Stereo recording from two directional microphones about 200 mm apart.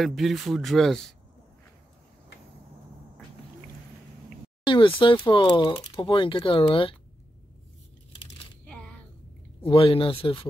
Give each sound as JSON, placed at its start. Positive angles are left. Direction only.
{"t": 0.0, "sound": "speech", "side_deg": 0}
{"t": 4.6, "sound": "speech", "side_deg": 25}
{"t": 8.6, "sound": "a sound", "side_deg": 5}
{"t": 9.6, "sound": "speech", "side_deg": 30}